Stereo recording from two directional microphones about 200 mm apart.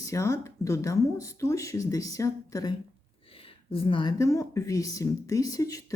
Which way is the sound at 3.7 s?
25° left (ahead or behind).